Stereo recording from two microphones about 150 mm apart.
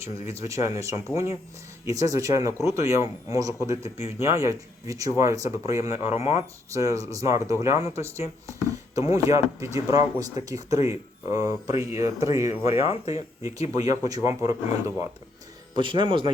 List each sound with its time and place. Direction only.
0.3 s a man's voice: 20° right (ahead or behind)
6.0 s speech: 45° left (ahead or behind)
6.7 s a man's voice: 20° right (ahead or behind)
12.6 s speech: 40° left (ahead or behind)
13.4 s a man's voice: 25° right (ahead or behind)